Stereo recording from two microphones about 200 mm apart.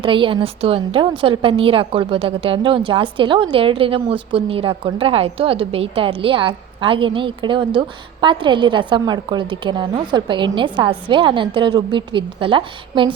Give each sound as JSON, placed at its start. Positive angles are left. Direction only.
{"t": 0.0, "sound": "a woman's voice", "side_deg": -25}